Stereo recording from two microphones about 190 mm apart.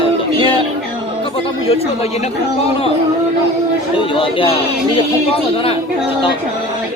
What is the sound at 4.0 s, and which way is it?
Speech, 30° left (ahead or behind).